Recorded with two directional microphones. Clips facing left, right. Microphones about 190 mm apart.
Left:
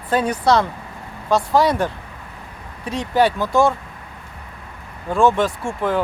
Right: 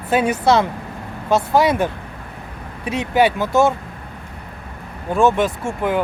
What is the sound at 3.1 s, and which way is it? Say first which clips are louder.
Speech: right 1 dB; 20° right (ahead or behind).